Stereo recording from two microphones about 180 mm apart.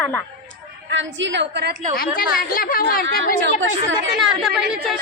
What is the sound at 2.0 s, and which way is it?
A woman's voice, 55° left (ahead or behind).